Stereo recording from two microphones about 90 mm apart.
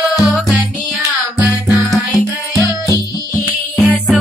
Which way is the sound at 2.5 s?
35° right (ahead or behind).